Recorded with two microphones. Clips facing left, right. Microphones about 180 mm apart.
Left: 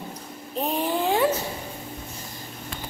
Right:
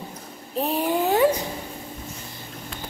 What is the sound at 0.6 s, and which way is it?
Speech, 5° right (ahead or behind).